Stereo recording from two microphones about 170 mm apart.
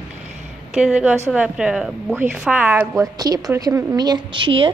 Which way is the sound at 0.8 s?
5° right (ahead or behind).